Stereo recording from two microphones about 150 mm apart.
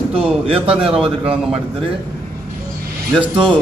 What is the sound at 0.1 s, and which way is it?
Speech, 40° right (ahead or behind).